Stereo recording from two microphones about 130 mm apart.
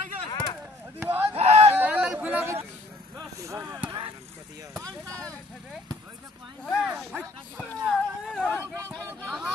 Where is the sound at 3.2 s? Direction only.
25° right (ahead or behind).